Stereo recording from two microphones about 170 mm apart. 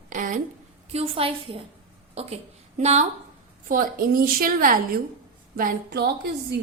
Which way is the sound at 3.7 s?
55° right (ahead or behind).